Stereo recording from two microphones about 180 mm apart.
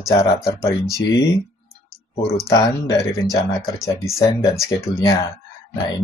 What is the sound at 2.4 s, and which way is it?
Speech, 15° left (ahead or behind).